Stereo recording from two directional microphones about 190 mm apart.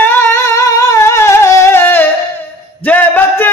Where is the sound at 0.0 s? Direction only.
10° left (ahead or behind).